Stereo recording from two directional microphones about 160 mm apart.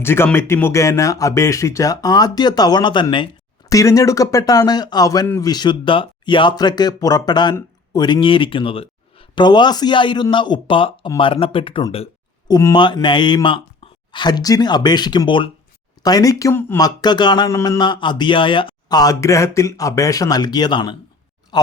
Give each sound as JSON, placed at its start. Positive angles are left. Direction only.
{"t": 0.0, "sound": "speech", "side_deg": 15}
{"t": 12.5, "sound": "speech", "side_deg": 20}